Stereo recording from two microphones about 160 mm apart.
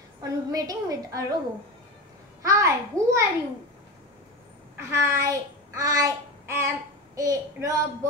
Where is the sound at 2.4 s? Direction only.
20° right (ahead or behind).